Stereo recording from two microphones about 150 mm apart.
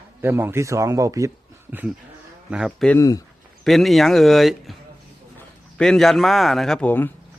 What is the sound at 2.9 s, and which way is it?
Speech, 25° left (ahead or behind).